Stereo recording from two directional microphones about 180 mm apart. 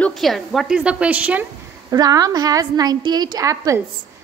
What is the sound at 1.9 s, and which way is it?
A woman's voice, 20° right (ahead or behind).